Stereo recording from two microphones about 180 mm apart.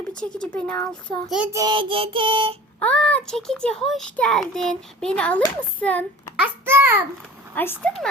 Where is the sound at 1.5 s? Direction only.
25° right (ahead or behind).